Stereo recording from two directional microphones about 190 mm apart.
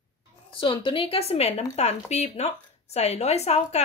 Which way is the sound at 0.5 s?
25° left (ahead or behind).